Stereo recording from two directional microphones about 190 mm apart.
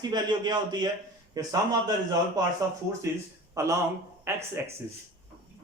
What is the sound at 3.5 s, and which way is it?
Speech, 15° right (ahead or behind).